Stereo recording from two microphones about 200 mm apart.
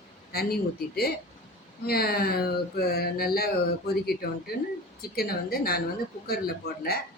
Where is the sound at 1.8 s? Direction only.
50° left (ahead or behind).